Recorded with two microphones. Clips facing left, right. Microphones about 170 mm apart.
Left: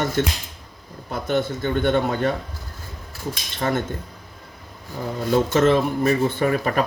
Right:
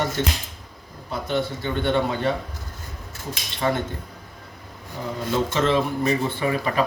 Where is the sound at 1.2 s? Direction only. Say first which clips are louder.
Left 3 dB; 50° left (ahead or behind).